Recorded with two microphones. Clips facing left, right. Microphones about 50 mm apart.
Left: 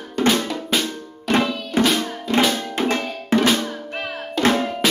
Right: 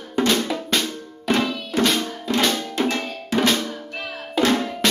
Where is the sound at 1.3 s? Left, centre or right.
Centre.